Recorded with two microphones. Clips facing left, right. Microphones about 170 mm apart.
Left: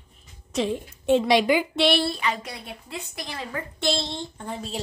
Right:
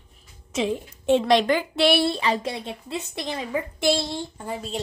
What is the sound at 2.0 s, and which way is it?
A woman's voice, 30° right (ahead or behind).